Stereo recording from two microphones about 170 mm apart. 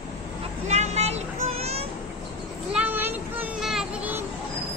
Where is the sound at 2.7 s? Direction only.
10° right (ahead or behind).